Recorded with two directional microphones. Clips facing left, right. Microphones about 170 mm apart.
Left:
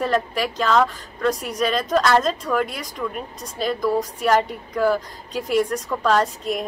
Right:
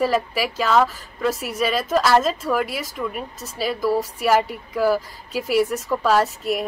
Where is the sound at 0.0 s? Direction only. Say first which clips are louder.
Right 1 dB; 5° right (ahead or behind).